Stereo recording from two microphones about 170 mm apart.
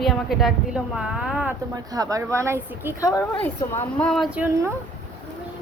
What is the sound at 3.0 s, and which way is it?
A woman's voice, 20° left (ahead or behind).